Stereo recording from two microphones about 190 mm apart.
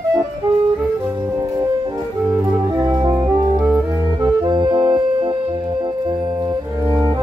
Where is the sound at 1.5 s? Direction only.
20° right (ahead or behind).